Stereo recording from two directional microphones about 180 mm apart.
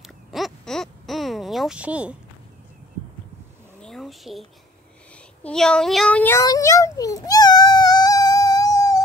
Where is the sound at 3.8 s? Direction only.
Centre (ahead or behind); by 9.0 s 20° left (ahead or behind).